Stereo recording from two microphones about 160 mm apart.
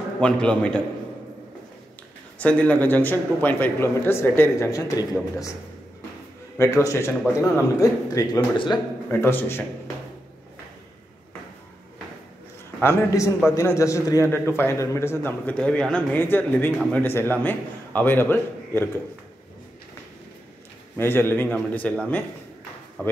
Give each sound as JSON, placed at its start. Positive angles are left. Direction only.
{"t": 0.2, "sound": "a man's voice", "side_deg": 5}
{"t": 2.3, "sound": "a man's voice", "side_deg": 10}
{"t": 6.6, "sound": "speech", "side_deg": 20}
{"t": 9.1, "sound": "a man's voice", "side_deg": 15}
{"t": 12.8, "sound": "a man's voice", "side_deg": 20}
{"t": 21.0, "sound": "a man's voice", "side_deg": 15}